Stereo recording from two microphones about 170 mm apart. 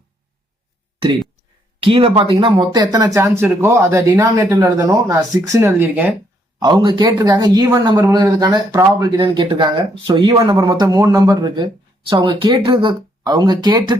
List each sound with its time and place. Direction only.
0.9 s speech: 25° right (ahead or behind)
6.6 s speech: 25° right (ahead or behind)